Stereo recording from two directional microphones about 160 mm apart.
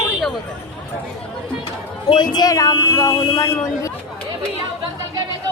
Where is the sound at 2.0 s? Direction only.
25° left (ahead or behind).